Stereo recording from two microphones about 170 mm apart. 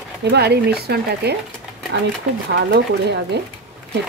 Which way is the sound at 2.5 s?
75° right (ahead or behind).